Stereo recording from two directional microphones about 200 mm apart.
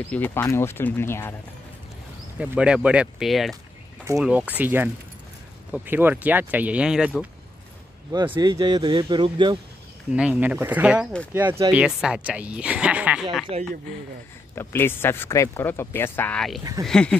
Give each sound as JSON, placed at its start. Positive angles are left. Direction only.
{"t": 0.1, "sound": "speech", "side_deg": 10}
{"t": 2.3, "sound": "speech", "side_deg": -5}
{"t": 8.1, "sound": "a man's voice", "side_deg": -20}
{"t": 10.1, "sound": "speech", "side_deg": -5}
{"t": 14.5, "sound": "speech", "side_deg": 10}